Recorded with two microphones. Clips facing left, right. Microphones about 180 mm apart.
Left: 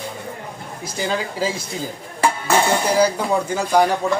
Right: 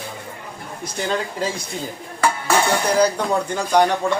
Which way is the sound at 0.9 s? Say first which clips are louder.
Left 1 dB; 5° left (ahead or behind).